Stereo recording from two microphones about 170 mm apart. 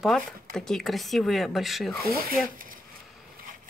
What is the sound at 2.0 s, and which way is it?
Speech, 60° right (ahead or behind).